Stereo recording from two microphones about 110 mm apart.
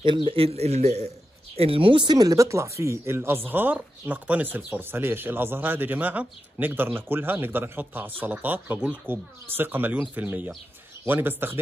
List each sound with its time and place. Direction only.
0.0 s speech: 50° right (ahead or behind); by 1.1 s 85° right
1.6 s speech: 55° right (ahead or behind)
2.1 s speech: 30° right (ahead or behind)